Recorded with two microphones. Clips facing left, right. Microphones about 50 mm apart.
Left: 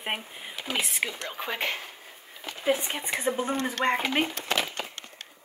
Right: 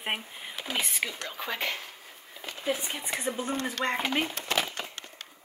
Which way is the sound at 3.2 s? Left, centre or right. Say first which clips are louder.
Left 4 dB; centre.